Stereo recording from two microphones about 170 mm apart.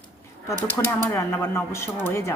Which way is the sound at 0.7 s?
15° left (ahead or behind).